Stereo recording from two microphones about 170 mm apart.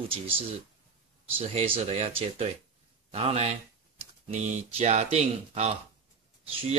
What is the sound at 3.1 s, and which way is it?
A man's voice, 40° right (ahead or behind).